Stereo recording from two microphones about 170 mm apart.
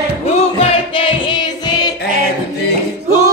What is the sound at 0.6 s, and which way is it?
Music, 35° left (ahead or behind).